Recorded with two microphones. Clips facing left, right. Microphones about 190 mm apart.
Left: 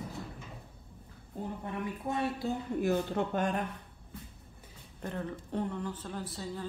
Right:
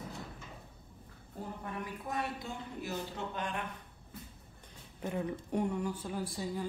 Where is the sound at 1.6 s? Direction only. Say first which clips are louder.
Left 6 dB; 25° left (ahead or behind).